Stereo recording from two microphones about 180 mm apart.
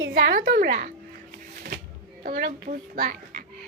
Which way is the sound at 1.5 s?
50° right (ahead or behind).